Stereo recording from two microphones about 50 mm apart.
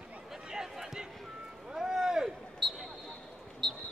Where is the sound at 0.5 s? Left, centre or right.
Centre.